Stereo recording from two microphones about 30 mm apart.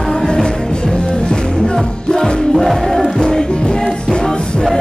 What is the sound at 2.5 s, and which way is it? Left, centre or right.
Music, centre.